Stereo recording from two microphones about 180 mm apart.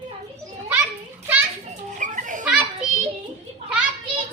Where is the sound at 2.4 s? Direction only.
5° right (ahead or behind).